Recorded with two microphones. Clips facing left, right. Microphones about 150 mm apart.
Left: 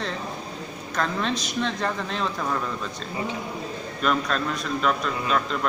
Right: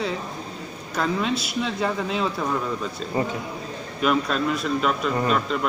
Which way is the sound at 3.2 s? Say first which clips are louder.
Right 5 dB; 45° right (ahead or behind).